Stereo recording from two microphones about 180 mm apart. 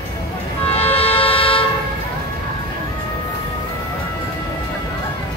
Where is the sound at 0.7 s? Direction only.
35° left (ahead or behind).